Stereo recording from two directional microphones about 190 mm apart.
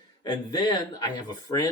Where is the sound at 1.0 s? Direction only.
20° left (ahead or behind).